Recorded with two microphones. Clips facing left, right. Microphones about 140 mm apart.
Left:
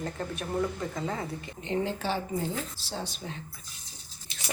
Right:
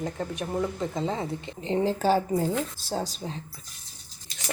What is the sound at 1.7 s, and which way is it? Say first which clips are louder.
A woman's voice: right 6 dB; 40° right (ahead or behind).